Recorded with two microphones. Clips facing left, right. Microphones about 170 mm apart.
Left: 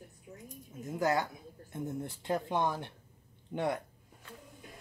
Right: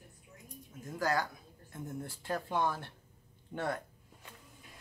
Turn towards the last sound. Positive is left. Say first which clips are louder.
# left 3 dB
turn(degrees=15)  # may be behind; listen again after turning